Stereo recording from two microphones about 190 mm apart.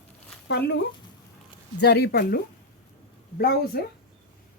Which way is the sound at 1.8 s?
60° left (ahead or behind).